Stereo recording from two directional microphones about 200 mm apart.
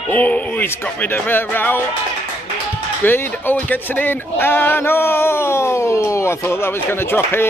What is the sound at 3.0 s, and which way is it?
A man's voice, 10° left (ahead or behind).